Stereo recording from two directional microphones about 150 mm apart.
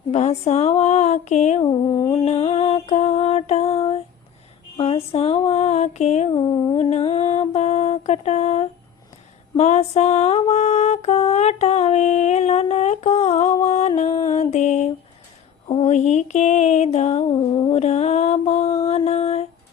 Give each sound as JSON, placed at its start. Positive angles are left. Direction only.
{"t": 0.1, "sound": "mantra", "side_deg": 45}
{"t": 1.6, "sound": "humming", "side_deg": 30}
{"t": 2.2, "sound": "mantra", "side_deg": 40}
{"t": 4.8, "sound": "a sound", "side_deg": 40}
{"t": 6.3, "sound": "humming", "side_deg": 30}
{"t": 6.9, "sound": "mantra", "side_deg": 40}
{"t": 9.6, "sound": "lullaby", "side_deg": 45}
{"t": 15.7, "sound": "mantra", "side_deg": 50}
{"t": 17.3, "sound": "humming", "side_deg": 30}
{"t": 17.7, "sound": "mantra", "side_deg": 45}